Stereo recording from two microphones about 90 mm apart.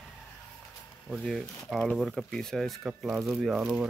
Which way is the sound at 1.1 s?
Centre (ahead or behind).